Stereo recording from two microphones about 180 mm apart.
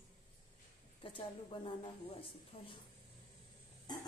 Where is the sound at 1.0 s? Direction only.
30° left (ahead or behind).